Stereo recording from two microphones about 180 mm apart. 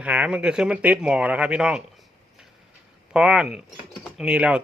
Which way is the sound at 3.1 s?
5° right (ahead or behind).